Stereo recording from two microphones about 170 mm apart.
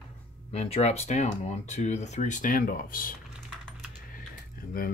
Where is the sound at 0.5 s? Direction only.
40° left (ahead or behind); by 3.1 s 55° left (ahead or behind).